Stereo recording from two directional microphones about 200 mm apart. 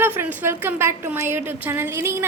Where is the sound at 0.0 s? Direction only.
10° right (ahead or behind).